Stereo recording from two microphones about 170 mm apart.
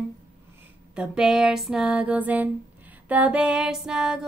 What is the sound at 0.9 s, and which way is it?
Female singing, 5° right (ahead or behind).